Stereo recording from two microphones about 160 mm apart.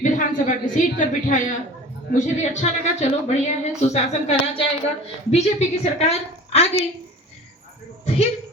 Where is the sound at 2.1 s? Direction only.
45° left (ahead or behind).